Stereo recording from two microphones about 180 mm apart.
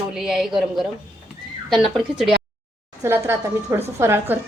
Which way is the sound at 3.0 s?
15° right (ahead or behind).